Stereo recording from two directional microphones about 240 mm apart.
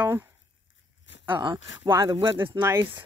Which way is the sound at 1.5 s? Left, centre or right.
Left.